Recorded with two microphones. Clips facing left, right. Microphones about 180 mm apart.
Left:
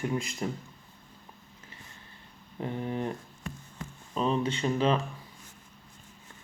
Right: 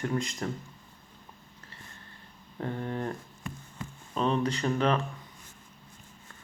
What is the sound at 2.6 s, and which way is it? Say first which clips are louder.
Speech: left 1 dB; 15° left (ahead or behind).